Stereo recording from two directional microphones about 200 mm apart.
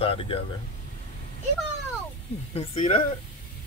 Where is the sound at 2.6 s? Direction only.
40° left (ahead or behind).